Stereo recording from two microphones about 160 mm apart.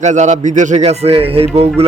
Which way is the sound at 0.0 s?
50° right (ahead or behind).